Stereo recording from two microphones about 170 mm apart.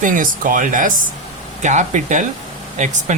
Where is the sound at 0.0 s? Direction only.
50° right (ahead or behind).